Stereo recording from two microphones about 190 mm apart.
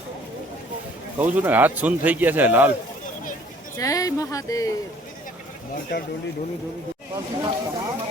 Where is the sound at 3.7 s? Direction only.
15° left (ahead or behind).